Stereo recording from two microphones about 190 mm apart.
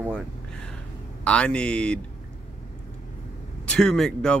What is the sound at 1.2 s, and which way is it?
Speech, 5° left (ahead or behind).